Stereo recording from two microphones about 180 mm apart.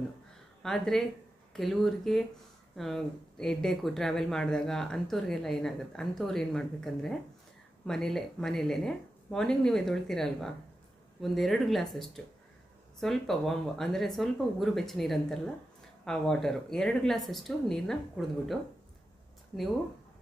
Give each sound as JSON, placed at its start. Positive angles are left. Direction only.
{"t": 0.6, "sound": "speech", "side_deg": 0}